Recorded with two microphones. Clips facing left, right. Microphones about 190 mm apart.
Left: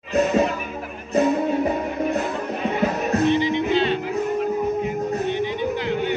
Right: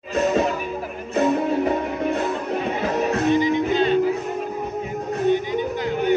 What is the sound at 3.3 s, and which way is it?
Music, 45° right (ahead or behind).